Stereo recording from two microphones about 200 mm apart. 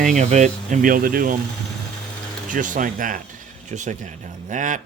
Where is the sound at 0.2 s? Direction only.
35° right (ahead or behind).